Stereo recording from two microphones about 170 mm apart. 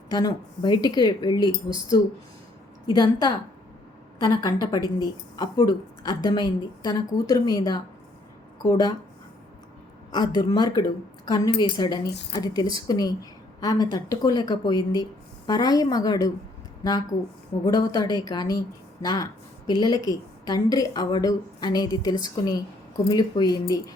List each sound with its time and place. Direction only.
0.1 s a woman's voice: 20° left (ahead or behind)
10.1 s a woman's voice: 25° left (ahead or behind)